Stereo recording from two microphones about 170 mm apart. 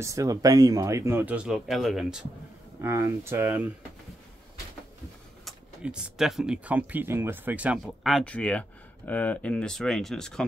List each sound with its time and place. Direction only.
0.0 s speech: 20° right (ahead or behind); by 2.2 s 5° right (ahead or behind)
2.8 s speech: 15° right (ahead or behind)
5.4 s speech: 5° right (ahead or behind)